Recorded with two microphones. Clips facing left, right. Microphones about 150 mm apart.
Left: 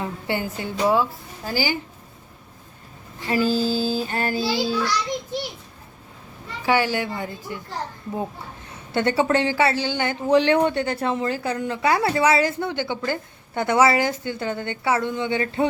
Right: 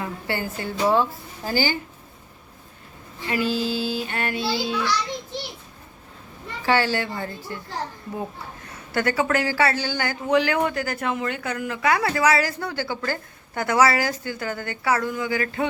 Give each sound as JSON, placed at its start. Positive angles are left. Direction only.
{"t": 0.0, "sound": "a woman's voice", "side_deg": 20}
{"t": 3.2, "sound": "child singing", "side_deg": 35}
{"t": 6.7, "sound": "a woman's voice", "side_deg": 15}
{"t": 8.9, "sound": "speech", "side_deg": 25}